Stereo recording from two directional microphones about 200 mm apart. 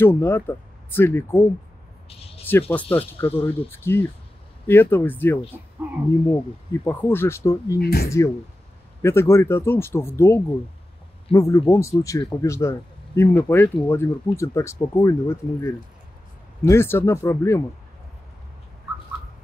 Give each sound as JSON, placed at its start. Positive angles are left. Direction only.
{"t": 0.0, "sound": "speech", "side_deg": 10}
{"t": 2.7, "sound": "speech", "side_deg": 5}
{"t": 5.8, "sound": "speech", "side_deg": -5}
{"t": 6.3, "sound": "speech", "side_deg": 10}
{"t": 7.8, "sound": "speech", "side_deg": 50}
{"t": 9.0, "sound": "speech", "side_deg": 10}